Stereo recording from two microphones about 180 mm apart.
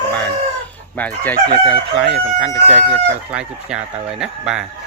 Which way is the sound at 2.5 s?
40° right (ahead or behind).